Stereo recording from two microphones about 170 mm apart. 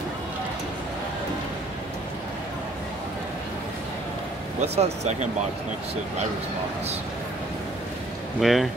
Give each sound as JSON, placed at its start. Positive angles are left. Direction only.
{"t": 4.6, "sound": "speech", "side_deg": -40}
{"t": 8.4, "sound": "speech", "side_deg": 0}